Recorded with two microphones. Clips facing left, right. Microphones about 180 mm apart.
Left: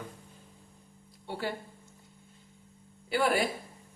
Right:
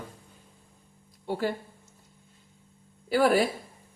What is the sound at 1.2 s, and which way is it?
Speech, 45° right (ahead or behind).